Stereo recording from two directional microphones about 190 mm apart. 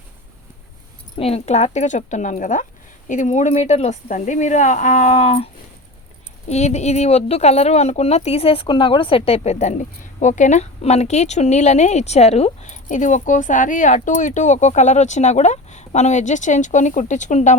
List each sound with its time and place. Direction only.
1.1 s speech: 30° left (ahead or behind)
6.5 s speech: 35° left (ahead or behind)